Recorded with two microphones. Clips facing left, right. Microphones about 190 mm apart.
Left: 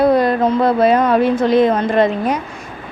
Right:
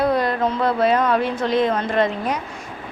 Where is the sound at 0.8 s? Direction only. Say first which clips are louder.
Left 4 dB; 10° left (ahead or behind).